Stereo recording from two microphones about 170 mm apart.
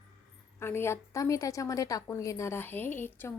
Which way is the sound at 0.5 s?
15° left (ahead or behind).